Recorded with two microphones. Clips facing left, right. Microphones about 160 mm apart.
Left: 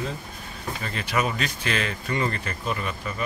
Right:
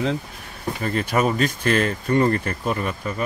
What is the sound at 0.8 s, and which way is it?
Speech, 50° right (ahead or behind).